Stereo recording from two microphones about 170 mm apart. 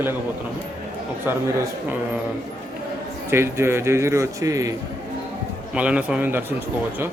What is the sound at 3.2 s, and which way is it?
Speech, 15° right (ahead or behind).